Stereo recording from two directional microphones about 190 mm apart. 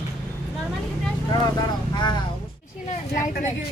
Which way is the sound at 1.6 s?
20° left (ahead or behind).